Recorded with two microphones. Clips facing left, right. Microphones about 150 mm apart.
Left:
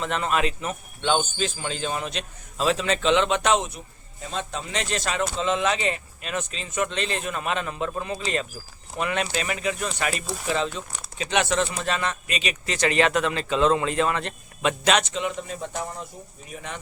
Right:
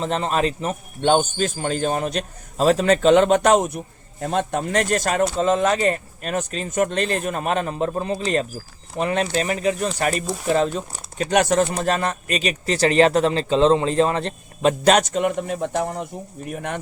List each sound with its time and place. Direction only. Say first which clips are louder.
0.0 s a man's voice: right 3 dB; 35° right (ahead or behind); by 16.8 s 55° right (ahead or behind)